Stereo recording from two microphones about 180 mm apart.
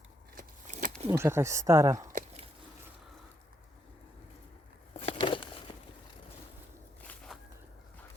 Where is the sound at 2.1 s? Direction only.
35° right (ahead or behind).